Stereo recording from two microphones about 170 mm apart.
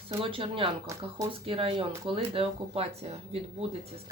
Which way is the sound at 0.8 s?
20° right (ahead or behind).